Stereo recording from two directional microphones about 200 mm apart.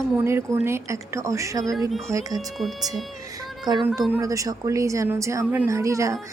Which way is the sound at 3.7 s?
20° right (ahead or behind).